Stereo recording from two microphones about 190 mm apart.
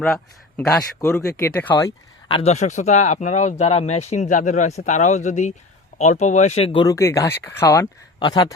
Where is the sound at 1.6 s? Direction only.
25° left (ahead or behind).